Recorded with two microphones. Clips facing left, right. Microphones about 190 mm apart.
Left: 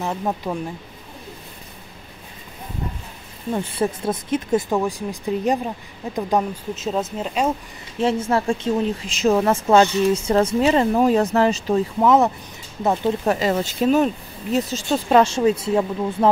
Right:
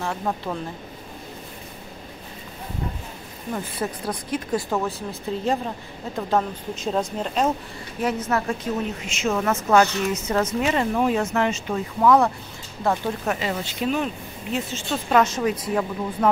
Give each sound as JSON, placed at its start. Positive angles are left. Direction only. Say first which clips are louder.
{"t": 0.0, "sound": "speech", "louder": "left 3 dB", "side_deg": 15}
{"t": 3.5, "sound": "speech", "louder": "left 6 dB", "side_deg": 25}
{"t": 6.7, "sound": "speech", "louder": "even", "side_deg": 5}
{"t": 8.0, "sound": "speech", "louder": "left 4 dB", "side_deg": 30}
{"t": 12.0, "sound": "speech", "louder": "right 1 dB", "side_deg": 20}
{"t": 13.2, "sound": "speech", "louder": "left 6 dB", "side_deg": 35}